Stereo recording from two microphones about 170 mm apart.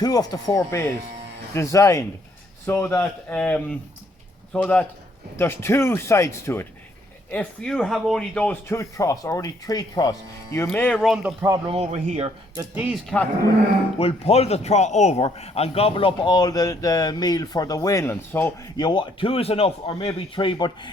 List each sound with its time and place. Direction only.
0.0 s a man's voice: 20° left (ahead or behind)
10.7 s speech: 5° left (ahead or behind)
11.4 s speech: 20° right (ahead or behind)
11.7 s speech: 35° right (ahead or behind)
12.7 s speech: 10° right (ahead or behind)
14.0 s a man's voice: 35° left (ahead or behind)